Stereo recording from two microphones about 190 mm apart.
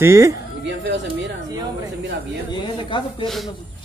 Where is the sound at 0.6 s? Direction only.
70° right (ahead or behind).